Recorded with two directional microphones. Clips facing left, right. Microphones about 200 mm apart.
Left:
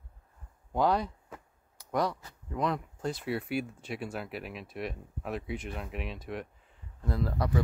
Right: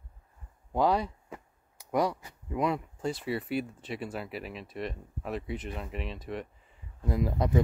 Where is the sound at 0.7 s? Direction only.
5° right (ahead or behind).